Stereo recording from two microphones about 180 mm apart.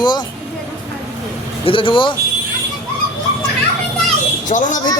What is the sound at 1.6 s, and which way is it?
Speech, 30° left (ahead or behind).